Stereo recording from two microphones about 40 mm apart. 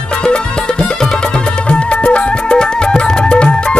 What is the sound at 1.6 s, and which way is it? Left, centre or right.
Music, left.